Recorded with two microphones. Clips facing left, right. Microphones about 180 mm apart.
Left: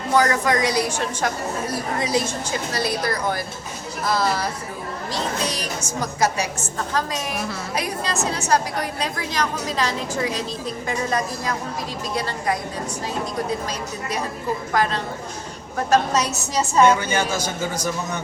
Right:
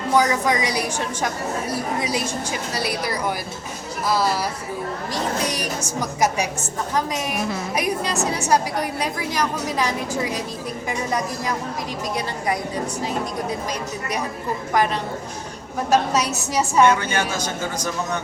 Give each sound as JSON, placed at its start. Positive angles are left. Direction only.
{"t": 0.2, "sound": "a woman's voice", "side_deg": -15}
{"t": 14.7, "sound": "a woman's voice", "side_deg": -15}
{"t": 16.9, "sound": "a woman's voice", "side_deg": 10}